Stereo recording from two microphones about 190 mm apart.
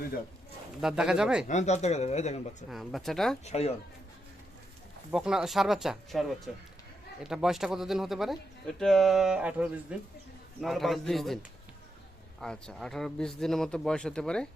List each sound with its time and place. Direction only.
0.8 s speech: 5° right (ahead or behind)
1.5 s speech: 35° left (ahead or behind)
2.6 s speech: centre (ahead or behind)
3.4 s speech: 35° left (ahead or behind)
5.1 s speech: 5° right (ahead or behind)
12.4 s speech: 5° left (ahead or behind)